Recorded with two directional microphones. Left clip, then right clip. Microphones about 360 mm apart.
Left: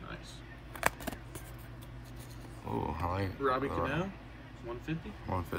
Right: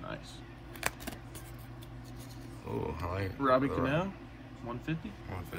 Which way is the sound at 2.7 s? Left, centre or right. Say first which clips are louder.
Left 2 dB; centre.